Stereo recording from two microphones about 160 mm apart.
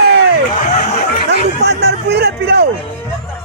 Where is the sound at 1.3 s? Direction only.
90° right.